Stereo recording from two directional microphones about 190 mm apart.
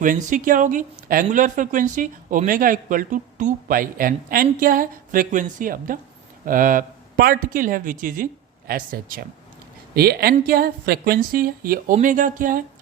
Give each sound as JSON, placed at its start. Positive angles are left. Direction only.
{"t": 0.0, "sound": "speech", "side_deg": -45}